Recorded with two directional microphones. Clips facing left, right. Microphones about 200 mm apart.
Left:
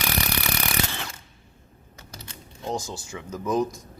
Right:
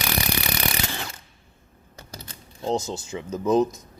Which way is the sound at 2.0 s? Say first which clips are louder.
Right 2 dB; 35° right (ahead or behind).